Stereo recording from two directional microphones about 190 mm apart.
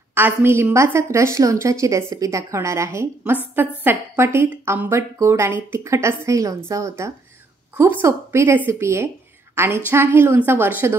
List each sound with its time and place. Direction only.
0.1 s a woman's voice: 10° right (ahead or behind)